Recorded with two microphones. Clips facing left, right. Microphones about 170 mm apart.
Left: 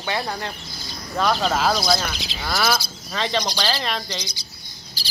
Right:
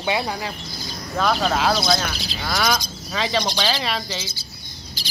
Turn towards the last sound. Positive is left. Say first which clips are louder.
# right 3 dB
turn(degrees=35)  # may be behind; listen again after turning